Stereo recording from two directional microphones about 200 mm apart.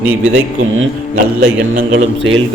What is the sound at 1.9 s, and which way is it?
Speech, 70° right (ahead or behind).